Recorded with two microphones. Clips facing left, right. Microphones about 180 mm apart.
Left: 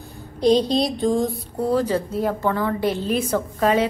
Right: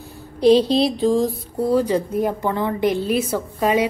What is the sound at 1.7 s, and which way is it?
A woman's voice, 10° right (ahead or behind).